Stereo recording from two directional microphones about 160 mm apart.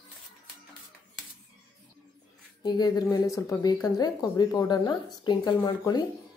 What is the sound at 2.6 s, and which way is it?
A woman's voice, 25° left (ahead or behind).